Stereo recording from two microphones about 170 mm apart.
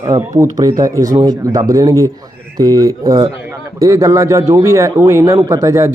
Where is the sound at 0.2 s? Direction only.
20° right (ahead or behind).